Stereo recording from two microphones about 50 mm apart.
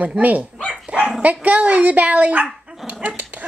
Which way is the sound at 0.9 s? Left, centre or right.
Right.